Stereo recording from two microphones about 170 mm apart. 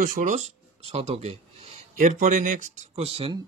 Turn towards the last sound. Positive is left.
turn(degrees=-35)  # may be behind; listen again after turning